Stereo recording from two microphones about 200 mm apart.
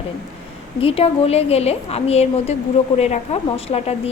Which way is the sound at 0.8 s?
30° left (ahead or behind).